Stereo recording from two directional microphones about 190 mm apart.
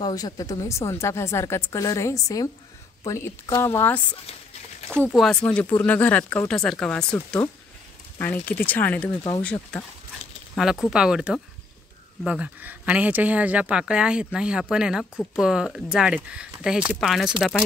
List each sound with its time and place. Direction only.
0.0 s a woman's voice: 20° left (ahead or behind)
5.1 s speech: centre (ahead or behind)
8.2 s a woman's voice: 10° left (ahead or behind)